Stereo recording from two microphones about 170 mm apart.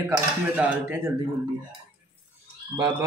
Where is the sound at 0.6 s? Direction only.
10° right (ahead or behind).